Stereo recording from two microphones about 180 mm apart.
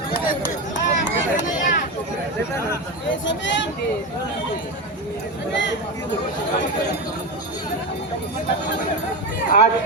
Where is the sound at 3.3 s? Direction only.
90° left.